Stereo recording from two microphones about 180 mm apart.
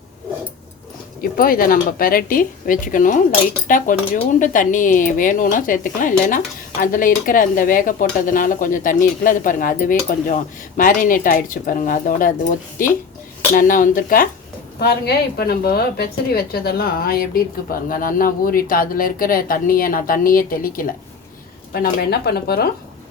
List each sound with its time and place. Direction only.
1.2 s speech: 55° left (ahead or behind)
14.8 s speech: 60° left (ahead or behind)